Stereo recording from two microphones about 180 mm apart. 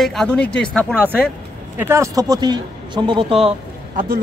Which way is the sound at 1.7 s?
15° right (ahead or behind).